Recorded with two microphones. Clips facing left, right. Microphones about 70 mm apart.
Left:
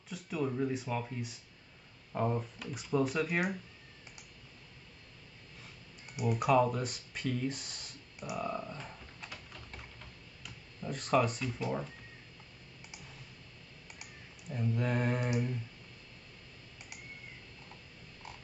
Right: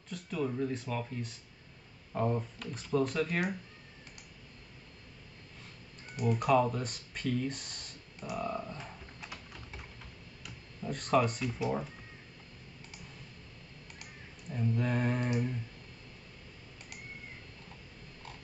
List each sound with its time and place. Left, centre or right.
0.1 s speech: centre
6.3 s speech: centre
8.4 s typing: centre
10.4 s speech: centre
14.5 s speech: centre
15.1 s speech: centre